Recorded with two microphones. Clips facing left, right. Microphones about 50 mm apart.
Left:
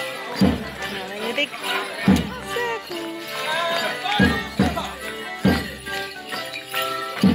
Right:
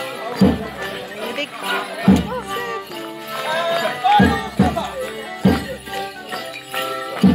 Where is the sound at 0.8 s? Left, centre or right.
Centre.